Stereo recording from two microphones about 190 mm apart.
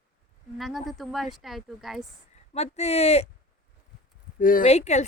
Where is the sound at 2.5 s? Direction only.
35° left (ahead or behind).